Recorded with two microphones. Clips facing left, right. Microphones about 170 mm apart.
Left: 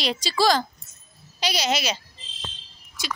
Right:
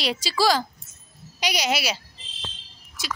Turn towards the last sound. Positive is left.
turn(degrees=0)  # may be behind; listen again after turning